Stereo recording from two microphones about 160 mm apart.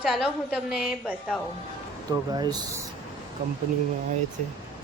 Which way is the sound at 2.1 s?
25° right (ahead or behind).